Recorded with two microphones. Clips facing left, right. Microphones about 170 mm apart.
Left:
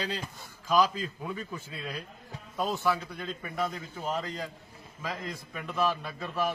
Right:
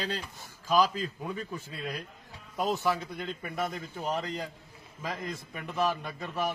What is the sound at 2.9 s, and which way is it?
A man's voice, 20° right (ahead or behind).